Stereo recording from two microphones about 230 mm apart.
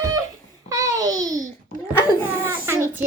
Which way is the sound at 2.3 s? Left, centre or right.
Centre.